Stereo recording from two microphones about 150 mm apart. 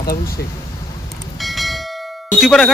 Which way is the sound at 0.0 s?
90° left.